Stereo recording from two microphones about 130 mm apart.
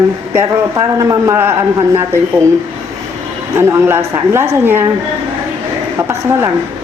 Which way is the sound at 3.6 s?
20° right (ahead or behind).